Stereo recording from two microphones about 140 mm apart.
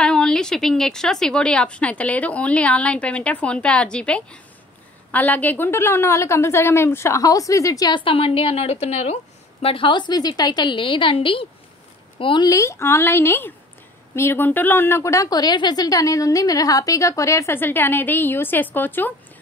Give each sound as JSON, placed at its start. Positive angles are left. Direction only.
{"t": 0.0, "sound": "a woman's voice", "side_deg": 5}
{"t": 12.4, "sound": "a woman's voice", "side_deg": 20}